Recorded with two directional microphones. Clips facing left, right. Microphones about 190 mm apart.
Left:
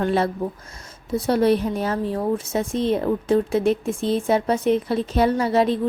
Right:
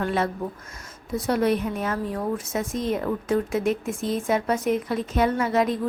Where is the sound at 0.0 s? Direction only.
30° left (ahead or behind).